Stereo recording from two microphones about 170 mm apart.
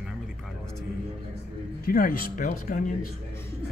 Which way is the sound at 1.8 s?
60° left (ahead or behind).